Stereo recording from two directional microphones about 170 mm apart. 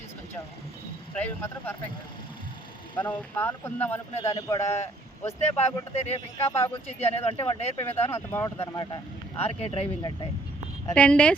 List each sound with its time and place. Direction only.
1.1 s speech: 10° left (ahead or behind)
3.0 s speech: 10° left (ahead or behind)
4.6 s speech: 40° left (ahead or behind)
7.9 s speech: 10° left (ahead or behind)
8.6 s speech: 25° left (ahead or behind)
9.4 s speech: 40° left (ahead or behind)
10.9 s speech: 5° left (ahead or behind)